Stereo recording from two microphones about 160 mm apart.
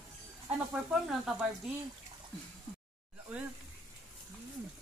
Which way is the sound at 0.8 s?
5° right (ahead or behind).